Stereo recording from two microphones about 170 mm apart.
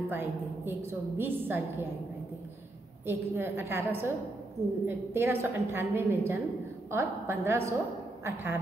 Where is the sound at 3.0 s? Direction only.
15° right (ahead or behind).